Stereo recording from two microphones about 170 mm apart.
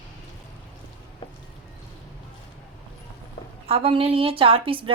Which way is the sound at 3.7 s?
35° right (ahead or behind).